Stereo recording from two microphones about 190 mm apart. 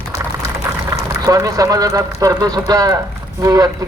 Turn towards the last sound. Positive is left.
turn(degrees=-20)  # may be behind; listen again after turning